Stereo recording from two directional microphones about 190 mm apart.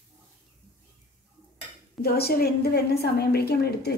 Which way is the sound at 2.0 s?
55° left (ahead or behind).